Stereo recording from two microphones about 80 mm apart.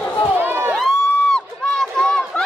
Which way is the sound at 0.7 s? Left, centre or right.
Centre.